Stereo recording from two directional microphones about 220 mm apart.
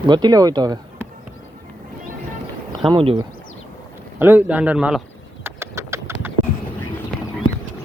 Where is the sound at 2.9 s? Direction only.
25° right (ahead or behind).